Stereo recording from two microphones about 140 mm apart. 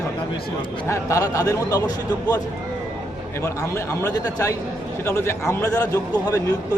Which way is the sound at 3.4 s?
20° left (ahead or behind).